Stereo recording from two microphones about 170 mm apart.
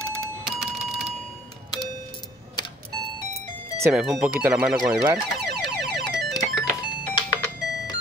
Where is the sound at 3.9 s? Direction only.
5° right (ahead or behind).